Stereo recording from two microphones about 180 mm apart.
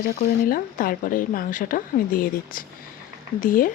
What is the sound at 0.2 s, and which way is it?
Speech, 55° left (ahead or behind).